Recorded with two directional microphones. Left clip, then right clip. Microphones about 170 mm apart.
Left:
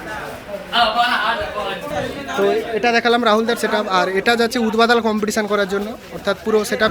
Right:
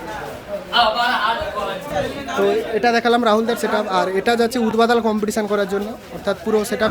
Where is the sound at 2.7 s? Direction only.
25° right (ahead or behind).